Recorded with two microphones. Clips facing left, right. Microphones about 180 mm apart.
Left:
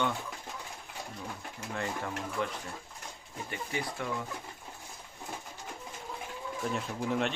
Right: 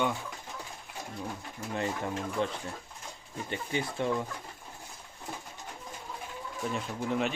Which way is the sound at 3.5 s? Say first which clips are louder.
Right 3 dB; 25° right (ahead or behind).